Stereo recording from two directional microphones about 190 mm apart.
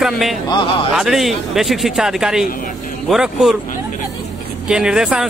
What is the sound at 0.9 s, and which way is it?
Speech, centre (ahead or behind).